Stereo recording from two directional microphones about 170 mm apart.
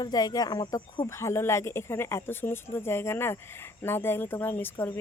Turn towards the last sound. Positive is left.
turn(degrees=10)  # may be behind; listen again after turning